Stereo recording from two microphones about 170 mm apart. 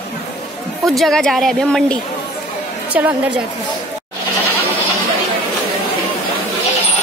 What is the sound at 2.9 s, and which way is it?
Speech, 10° right (ahead or behind).